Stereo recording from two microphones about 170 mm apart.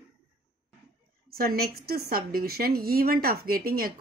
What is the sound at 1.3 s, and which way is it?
A woman's voice, 65° right (ahead or behind).